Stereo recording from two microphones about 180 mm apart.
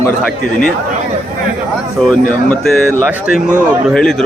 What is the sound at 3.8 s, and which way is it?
Speech, 5° left (ahead or behind).